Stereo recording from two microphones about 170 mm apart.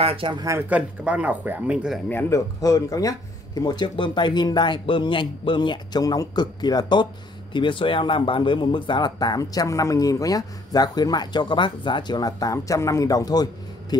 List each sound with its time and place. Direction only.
0.0 s speech: 30° right (ahead or behind); by 2.0 s 5° right (ahead or behind)
2.0 s speech: 15° left (ahead or behind)